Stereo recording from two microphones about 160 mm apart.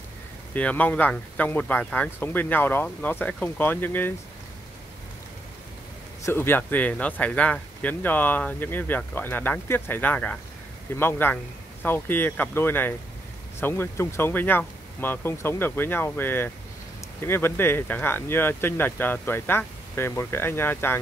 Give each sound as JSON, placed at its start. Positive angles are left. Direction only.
{"t": 0.6, "sound": "speech", "side_deg": 10}
{"t": 6.2, "sound": "speech", "side_deg": 15}